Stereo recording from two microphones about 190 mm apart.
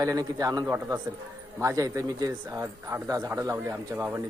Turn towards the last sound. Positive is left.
turn(degrees=-10)  # may be behind; listen again after turning